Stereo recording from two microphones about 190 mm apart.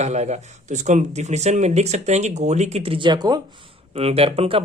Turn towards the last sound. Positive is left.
turn(degrees=-30)  # may be behind; listen again after turning